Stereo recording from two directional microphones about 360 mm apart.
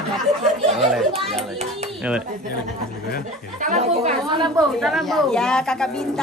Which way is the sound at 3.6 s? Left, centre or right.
Centre.